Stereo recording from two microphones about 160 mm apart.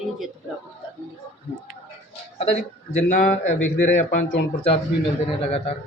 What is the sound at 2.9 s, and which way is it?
Speech, 45° left (ahead or behind).